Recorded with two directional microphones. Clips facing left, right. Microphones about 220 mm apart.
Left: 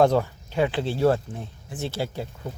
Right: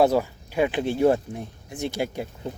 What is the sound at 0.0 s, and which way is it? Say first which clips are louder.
Speech: even; 10° right (ahead or behind).